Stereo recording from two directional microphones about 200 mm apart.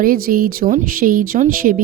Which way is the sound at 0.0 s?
45° right (ahead or behind).